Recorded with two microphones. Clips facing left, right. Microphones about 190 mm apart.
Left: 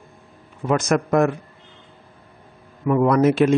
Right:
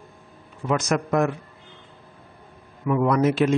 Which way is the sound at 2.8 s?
50° left (ahead or behind).